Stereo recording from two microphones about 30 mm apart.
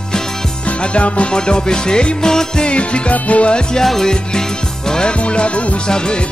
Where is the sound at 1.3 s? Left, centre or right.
Left.